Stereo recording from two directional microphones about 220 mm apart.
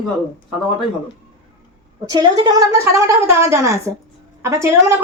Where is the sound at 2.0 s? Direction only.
15° right (ahead or behind).